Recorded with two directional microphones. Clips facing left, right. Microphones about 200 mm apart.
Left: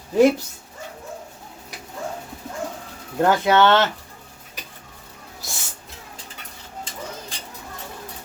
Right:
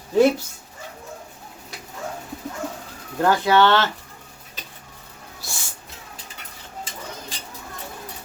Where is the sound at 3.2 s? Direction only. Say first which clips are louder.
Left 1 dB; 20° left (ahead or behind).